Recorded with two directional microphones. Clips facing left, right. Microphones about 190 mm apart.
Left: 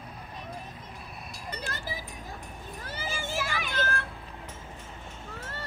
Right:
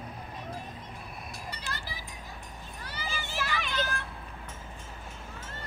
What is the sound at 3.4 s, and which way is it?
Child singing, 50° left (ahead or behind).